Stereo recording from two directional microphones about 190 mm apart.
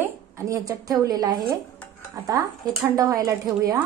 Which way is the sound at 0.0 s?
15° right (ahead or behind).